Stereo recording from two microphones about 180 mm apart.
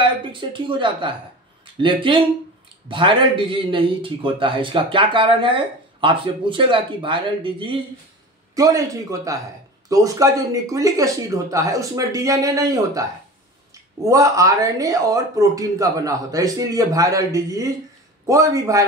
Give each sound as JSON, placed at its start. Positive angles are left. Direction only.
{"t": 0.0, "sound": "speech", "side_deg": -25}
{"t": 14.0, "sound": "a man's voice", "side_deg": -20}